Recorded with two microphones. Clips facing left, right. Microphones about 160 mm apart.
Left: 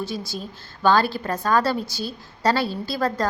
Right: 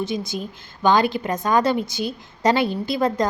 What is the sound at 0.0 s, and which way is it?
A woman's voice, 20° right (ahead or behind).